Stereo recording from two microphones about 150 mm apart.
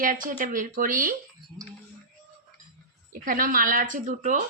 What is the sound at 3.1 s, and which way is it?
Speech, 70° right (ahead or behind).